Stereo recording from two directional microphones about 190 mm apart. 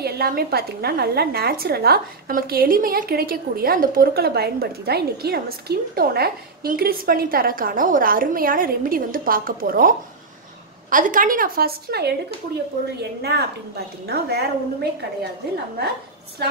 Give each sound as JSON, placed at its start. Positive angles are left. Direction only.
{"t": 0.0, "sound": "a woman's voice", "side_deg": -55}
{"t": 13.2, "sound": "a woman's voice", "side_deg": -55}